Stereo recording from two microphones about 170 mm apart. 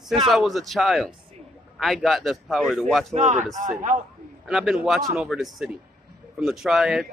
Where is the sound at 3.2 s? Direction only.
45° right (ahead or behind).